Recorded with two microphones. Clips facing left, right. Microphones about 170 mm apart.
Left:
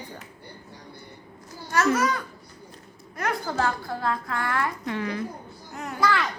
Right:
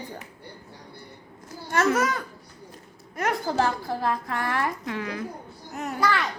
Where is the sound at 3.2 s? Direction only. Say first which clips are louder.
Right 2 dB; 30° right (ahead or behind).